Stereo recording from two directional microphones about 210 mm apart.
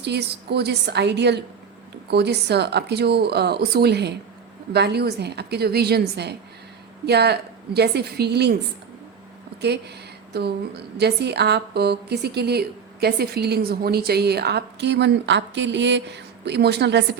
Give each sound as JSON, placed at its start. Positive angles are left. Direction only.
{"t": 0.0, "sound": "a woman's voice", "side_deg": -50}
{"t": 10.3, "sound": "a woman's voice", "side_deg": -50}